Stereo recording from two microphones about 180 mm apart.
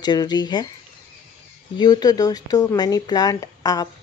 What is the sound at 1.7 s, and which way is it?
Speech, 20° left (ahead or behind).